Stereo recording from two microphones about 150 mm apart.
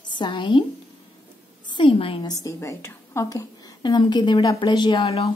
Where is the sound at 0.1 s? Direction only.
30° left (ahead or behind).